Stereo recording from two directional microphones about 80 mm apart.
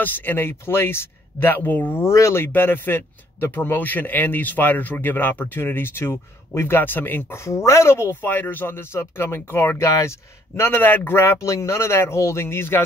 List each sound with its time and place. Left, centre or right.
0.0 s speech: left
2.0 s speech: left
7.4 s speech: left